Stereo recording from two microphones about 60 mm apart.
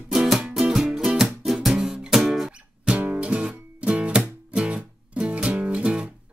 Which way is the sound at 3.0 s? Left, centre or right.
Right.